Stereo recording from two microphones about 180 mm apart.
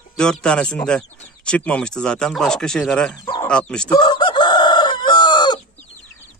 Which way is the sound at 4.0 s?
25° left (ahead or behind).